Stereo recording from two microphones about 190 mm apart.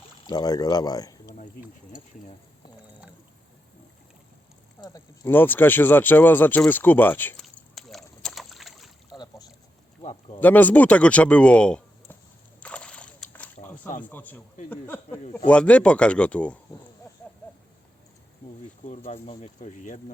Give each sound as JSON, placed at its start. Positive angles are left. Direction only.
{"t": 0.3, "sound": "speech", "side_deg": 20}
{"t": 4.8, "sound": "speech", "side_deg": 15}
{"t": 7.4, "sound": "boat", "side_deg": 0}
{"t": 9.1, "sound": "boat", "side_deg": 20}
{"t": 10.0, "sound": "speech", "side_deg": 30}
{"t": 10.4, "sound": "speech", "side_deg": 10}
{"t": 12.5, "sound": "splash", "side_deg": 5}
{"t": 14.0, "sound": "speech", "side_deg": 10}
{"t": 18.9, "sound": "speech", "side_deg": 35}